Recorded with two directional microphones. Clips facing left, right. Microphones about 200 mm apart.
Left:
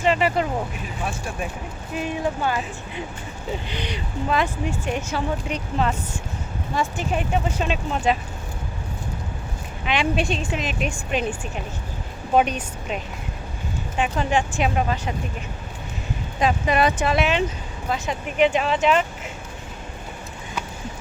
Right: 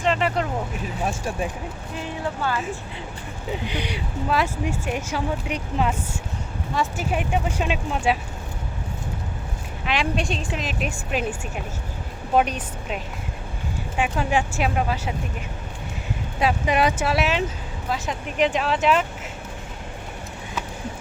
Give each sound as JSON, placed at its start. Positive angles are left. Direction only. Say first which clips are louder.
{"t": 0.0, "sound": "speech", "louder": "left 2 dB", "side_deg": 5}
{"t": 2.0, "sound": "speech", "louder": "left 4 dB", "side_deg": 15}
{"t": 3.5, "sound": "speech", "louder": "right 1 dB", "side_deg": -10}
{"t": 9.8, "sound": "a woman's voice", "louder": "left 2 dB", "side_deg": 0}
{"t": 16.4, "sound": "a woman's voice", "louder": "left 1 dB", "side_deg": -10}